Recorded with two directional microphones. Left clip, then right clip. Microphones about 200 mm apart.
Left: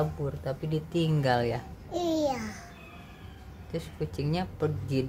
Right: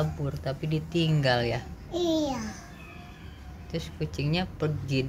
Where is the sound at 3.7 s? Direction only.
10° left (ahead or behind).